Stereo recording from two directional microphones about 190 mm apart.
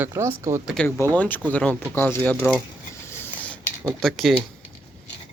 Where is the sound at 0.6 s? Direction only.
5° left (ahead or behind).